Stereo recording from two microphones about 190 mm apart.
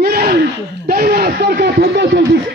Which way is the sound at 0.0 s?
50° right (ahead or behind).